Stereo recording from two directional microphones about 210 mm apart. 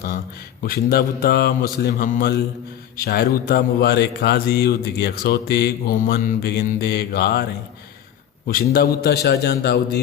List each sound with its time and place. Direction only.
0.9 s a man's voice: 45° left (ahead or behind)
8.4 s a man's voice: 45° left (ahead or behind)